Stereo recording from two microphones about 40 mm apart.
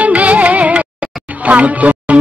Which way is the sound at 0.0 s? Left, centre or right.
Right.